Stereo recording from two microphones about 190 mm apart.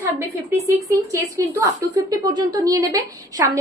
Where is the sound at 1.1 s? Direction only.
15° right (ahead or behind).